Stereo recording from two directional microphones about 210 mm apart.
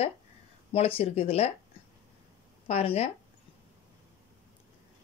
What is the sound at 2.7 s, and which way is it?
Speech, 30° left (ahead or behind).